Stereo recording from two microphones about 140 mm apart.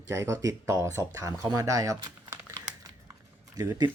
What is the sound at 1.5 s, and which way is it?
Typing, 25° right (ahead or behind).